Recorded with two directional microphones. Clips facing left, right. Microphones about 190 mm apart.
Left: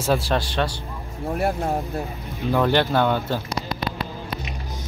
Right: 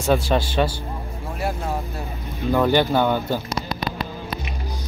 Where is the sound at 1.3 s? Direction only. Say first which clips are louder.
Left 3 dB; 55° left (ahead or behind).